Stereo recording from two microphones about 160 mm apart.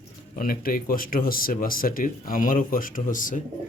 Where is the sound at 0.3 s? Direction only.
65° left (ahead or behind).